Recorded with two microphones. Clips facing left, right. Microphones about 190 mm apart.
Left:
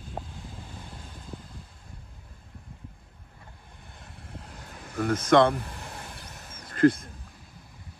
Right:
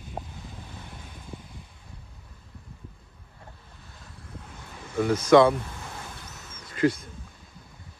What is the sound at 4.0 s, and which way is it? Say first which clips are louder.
Vehicle: even; 25° left (ahead or behind).